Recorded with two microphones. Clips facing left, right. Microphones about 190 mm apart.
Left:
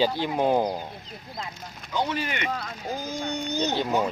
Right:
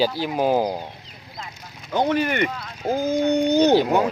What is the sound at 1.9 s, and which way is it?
Speech, 55° right (ahead or behind).